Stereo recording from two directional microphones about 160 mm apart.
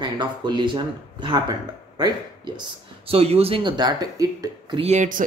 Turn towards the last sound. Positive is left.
turn(degrees=-40)  # may be behind; listen again after turning